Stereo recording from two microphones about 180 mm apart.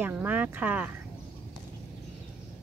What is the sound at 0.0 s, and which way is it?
Speech, 10° right (ahead or behind).